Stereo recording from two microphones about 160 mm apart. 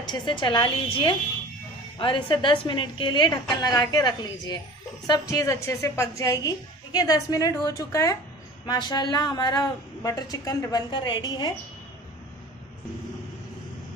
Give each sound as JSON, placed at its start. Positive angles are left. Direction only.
{"t": 0.0, "sound": "a woman's voice", "side_deg": 30}
{"t": 2.0, "sound": "a woman's voice", "side_deg": 30}